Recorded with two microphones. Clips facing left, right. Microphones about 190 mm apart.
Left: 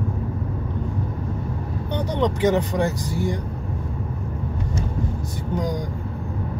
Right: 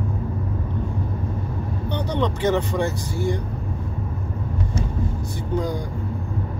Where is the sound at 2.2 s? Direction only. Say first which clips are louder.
Left 2 dB; 15° left (ahead or behind).